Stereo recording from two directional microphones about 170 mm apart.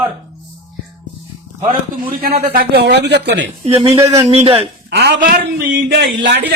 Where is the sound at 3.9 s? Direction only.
15° right (ahead or behind).